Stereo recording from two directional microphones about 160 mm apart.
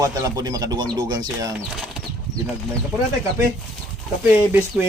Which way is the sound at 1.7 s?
5° right (ahead or behind).